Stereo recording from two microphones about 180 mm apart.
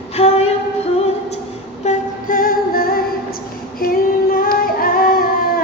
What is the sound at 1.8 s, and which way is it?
Singing, 45° left (ahead or behind).